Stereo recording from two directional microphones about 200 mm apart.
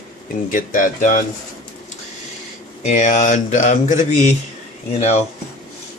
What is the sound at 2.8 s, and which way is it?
Speech, 35° left (ahead or behind).